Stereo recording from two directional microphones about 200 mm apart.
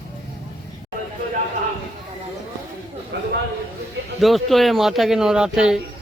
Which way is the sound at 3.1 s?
60° right (ahead or behind).